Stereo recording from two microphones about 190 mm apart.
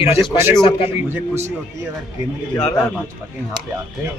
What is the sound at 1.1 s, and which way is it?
Speech, 15° right (ahead or behind).